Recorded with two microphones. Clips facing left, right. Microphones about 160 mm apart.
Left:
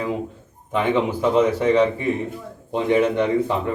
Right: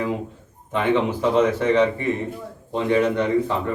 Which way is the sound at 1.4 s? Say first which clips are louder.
Left 1 dB; 10° left (ahead or behind).